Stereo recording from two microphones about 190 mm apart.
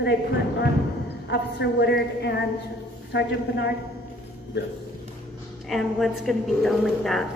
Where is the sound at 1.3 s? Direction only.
65° left (ahead or behind).